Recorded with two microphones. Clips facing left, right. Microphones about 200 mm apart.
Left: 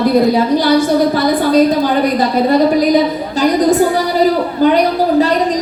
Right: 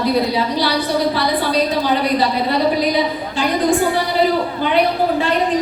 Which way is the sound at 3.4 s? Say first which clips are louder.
Left 5 dB; 40° left (ahead or behind).